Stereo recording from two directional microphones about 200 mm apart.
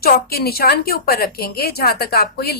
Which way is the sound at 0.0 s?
50° left (ahead or behind).